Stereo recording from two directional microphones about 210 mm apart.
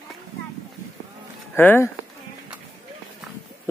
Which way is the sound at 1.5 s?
10° left (ahead or behind).